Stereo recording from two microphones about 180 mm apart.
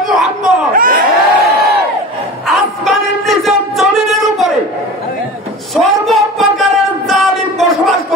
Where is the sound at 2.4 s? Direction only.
Centre (ahead or behind).